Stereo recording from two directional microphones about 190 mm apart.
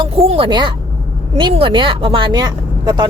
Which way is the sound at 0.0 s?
30° right (ahead or behind).